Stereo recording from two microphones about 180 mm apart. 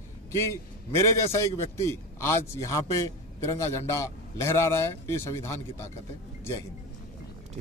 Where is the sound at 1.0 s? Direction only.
15° left (ahead or behind).